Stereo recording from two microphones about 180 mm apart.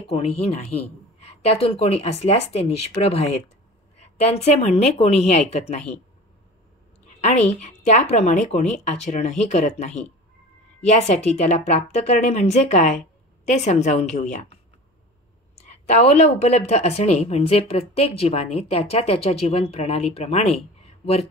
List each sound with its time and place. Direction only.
0.0 s a woman's voice: 35° left (ahead or behind)
7.8 s a woman's voice: 40° left (ahead or behind)
16.2 s a woman's voice: 40° left (ahead or behind)